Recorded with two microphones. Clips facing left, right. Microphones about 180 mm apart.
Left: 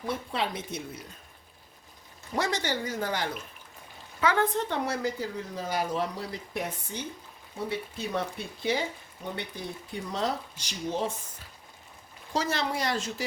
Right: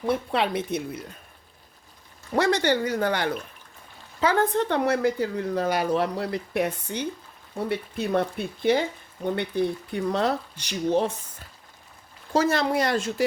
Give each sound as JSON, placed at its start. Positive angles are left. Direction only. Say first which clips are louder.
{"t": 0.0, "sound": "speech", "louder": "right 7 dB", "side_deg": -65}
{"t": 2.3, "sound": "speech", "louder": "right 8 dB", "side_deg": -65}
{"t": 4.2, "sound": "a woman's voice", "louder": "right 3 dB", "side_deg": -35}
{"t": 4.5, "sound": "speech", "louder": "right 7 dB", "side_deg": -65}
{"t": 12.3, "sound": "speech", "louder": "right 7 dB", "side_deg": -50}